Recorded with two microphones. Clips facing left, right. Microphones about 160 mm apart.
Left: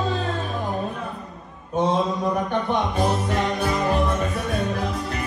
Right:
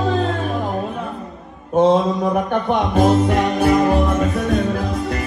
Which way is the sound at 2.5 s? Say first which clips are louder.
Right 5 dB; 55° right (ahead or behind).